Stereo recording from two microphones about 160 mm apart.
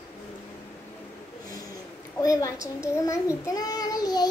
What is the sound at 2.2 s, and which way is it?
Speech, 20° left (ahead or behind).